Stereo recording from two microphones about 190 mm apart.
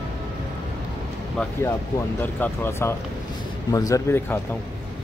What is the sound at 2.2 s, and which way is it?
Speech, 10° left (ahead or behind).